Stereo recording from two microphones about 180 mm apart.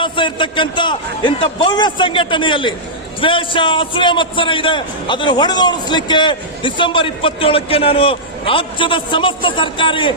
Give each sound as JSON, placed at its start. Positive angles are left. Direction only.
{"t": 0.0, "sound": "a man's voice", "side_deg": 25}